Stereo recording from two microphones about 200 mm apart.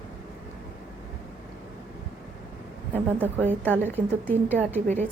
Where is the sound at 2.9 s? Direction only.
10° right (ahead or behind).